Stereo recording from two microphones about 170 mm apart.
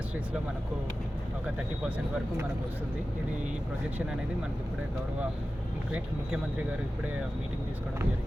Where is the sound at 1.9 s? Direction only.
10° right (ahead or behind).